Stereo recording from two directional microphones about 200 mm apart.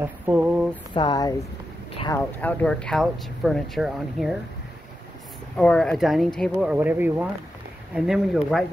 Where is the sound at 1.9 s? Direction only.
20° left (ahead or behind).